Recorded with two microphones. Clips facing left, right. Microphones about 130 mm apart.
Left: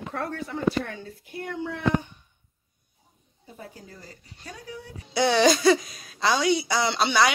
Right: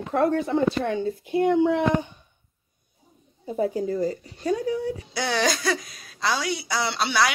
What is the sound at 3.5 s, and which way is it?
Speech, 90° right.